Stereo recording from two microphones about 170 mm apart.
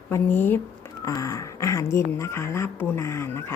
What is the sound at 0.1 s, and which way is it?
Speech, 10° left (ahead or behind).